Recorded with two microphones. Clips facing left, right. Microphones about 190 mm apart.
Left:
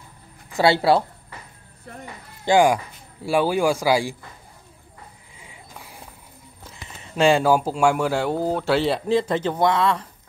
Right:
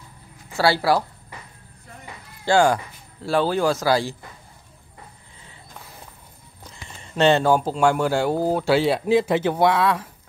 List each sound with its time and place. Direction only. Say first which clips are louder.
0.5 s speech: left 2 dB; 20° left (ahead or behind)
2.4 s speech: left 1 dB; 15° left (ahead or behind)
5.4 s a sound: left 1 dB; 10° left (ahead or behind)
6.7 s speech: even; 5° left (ahead or behind)